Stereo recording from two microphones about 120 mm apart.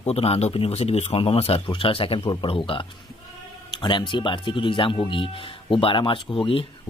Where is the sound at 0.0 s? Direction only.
55° left (ahead or behind).